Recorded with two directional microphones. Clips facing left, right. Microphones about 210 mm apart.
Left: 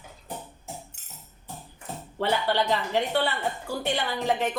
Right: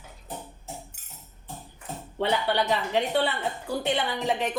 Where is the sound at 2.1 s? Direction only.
20° right (ahead or behind).